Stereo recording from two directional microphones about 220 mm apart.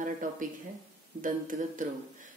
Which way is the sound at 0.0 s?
35° right (ahead or behind).